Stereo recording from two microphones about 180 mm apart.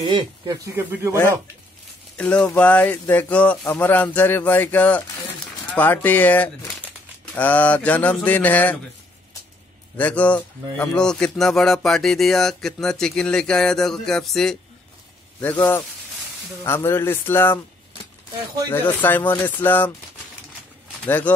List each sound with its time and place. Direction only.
0.1 s speech: 20° right (ahead or behind)
2.4 s speech: 10° left (ahead or behind)
9.9 s a man's voice: 10° left (ahead or behind)
18.7 s speech: 10° left (ahead or behind)
21.0 s speech: 10° left (ahead or behind)